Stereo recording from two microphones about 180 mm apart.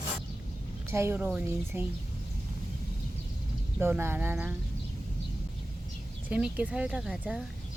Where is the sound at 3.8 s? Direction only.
15° right (ahead or behind).